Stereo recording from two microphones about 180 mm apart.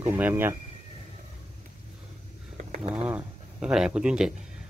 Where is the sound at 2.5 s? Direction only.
45° right (ahead or behind).